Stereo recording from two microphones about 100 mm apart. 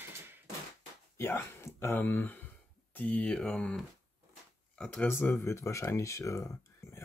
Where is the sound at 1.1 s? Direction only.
25° left (ahead or behind); by 5.0 s 10° left (ahead or behind).